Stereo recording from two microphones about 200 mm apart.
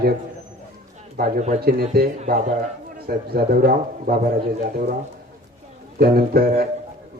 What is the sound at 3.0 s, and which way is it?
A man's voice, 50° right (ahead or behind).